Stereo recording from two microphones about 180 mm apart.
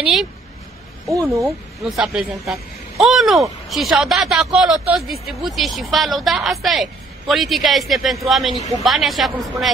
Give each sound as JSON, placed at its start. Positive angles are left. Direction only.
{"t": 0.0, "sound": "speech", "side_deg": 0}
{"t": 1.1, "sound": "speech", "side_deg": -15}
{"t": 1.4, "sound": "speech", "side_deg": 0}
{"t": 8.5, "sound": "speech", "side_deg": -20}
{"t": 8.8, "sound": "speech", "side_deg": 0}